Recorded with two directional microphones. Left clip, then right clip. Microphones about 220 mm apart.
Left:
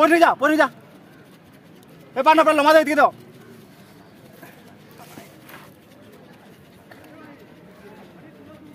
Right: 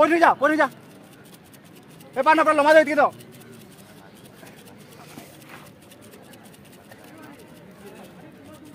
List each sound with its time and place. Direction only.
0.0 s a man's voice: 55° left (ahead or behind)
2.1 s a man's voice: 55° left (ahead or behind)